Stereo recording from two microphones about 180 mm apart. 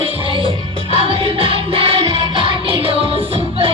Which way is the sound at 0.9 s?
30° right (ahead or behind).